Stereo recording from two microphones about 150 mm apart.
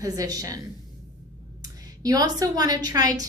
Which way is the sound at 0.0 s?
25° right (ahead or behind).